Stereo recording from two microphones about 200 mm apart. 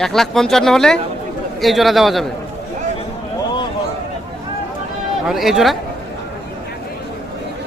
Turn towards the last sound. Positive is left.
turn(degrees=0)  # may be behind; listen again after turning